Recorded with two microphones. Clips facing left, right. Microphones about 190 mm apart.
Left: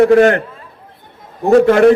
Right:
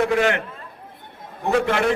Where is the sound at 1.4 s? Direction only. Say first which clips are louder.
Left 12 dB; 45° left (ahead or behind).